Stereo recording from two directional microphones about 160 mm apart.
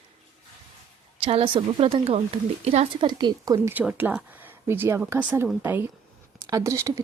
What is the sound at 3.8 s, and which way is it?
Speech, 10° right (ahead or behind).